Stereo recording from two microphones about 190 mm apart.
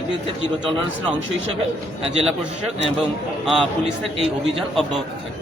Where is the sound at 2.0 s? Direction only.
35° right (ahead or behind).